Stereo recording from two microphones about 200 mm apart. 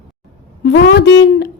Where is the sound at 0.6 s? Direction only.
60° left (ahead or behind).